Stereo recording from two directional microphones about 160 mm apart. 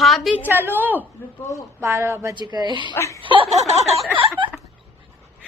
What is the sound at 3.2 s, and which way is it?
Snicker, 35° right (ahead or behind).